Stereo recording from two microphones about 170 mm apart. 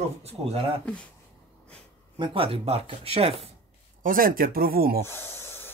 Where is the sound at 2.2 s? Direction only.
30° right (ahead or behind).